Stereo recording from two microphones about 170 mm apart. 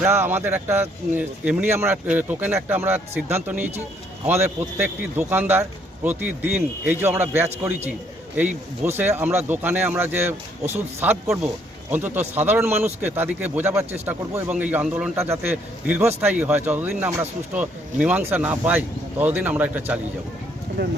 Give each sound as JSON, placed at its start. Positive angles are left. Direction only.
{"t": 0.0, "sound": "a man's voice", "side_deg": -15}
{"t": 20.8, "sound": "speech", "side_deg": -90}